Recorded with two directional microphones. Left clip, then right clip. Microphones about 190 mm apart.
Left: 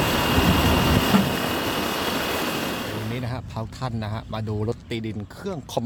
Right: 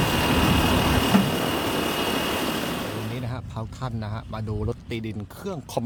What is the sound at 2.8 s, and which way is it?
A man's voice, 5° left (ahead or behind).